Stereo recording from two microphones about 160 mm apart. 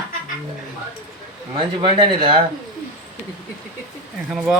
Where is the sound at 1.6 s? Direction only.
30° right (ahead or behind).